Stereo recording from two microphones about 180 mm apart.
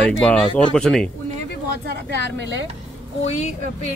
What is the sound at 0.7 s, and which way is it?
Speech, centre (ahead or behind).